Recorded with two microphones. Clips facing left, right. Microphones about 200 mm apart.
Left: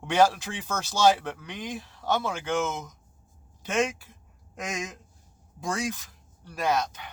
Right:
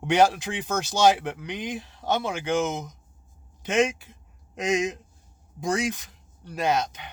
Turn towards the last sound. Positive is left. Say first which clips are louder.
# right 2 dB
turn(degrees=-20)  # may be behind; listen again after turning